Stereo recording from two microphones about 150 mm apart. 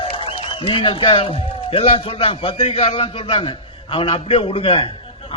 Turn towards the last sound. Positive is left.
turn(degrees=40)  # may be behind; listen again after turning